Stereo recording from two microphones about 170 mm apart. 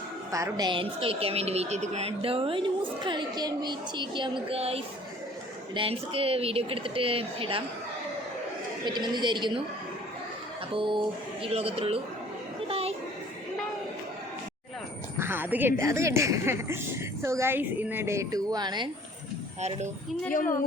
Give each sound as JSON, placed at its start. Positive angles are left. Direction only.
{"t": 0.3, "sound": "a woman's voice", "side_deg": -20}
{"t": 8.8, "sound": "speech", "side_deg": -25}
{"t": 10.8, "sound": "a woman's voice", "side_deg": -30}
{"t": 12.6, "sound": "a sound", "side_deg": -35}
{"t": 15.2, "sound": "music", "side_deg": -10}
{"t": 15.8, "sound": "a woman's voice", "side_deg": -20}